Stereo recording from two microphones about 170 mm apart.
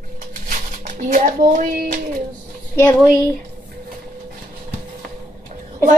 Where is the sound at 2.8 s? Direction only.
15° left (ahead or behind).